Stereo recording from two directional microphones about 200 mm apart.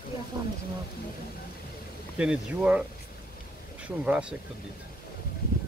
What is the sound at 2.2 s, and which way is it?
Speech, 5° right (ahead or behind).